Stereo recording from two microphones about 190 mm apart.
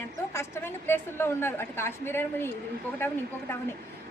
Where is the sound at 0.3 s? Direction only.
10° left (ahead or behind).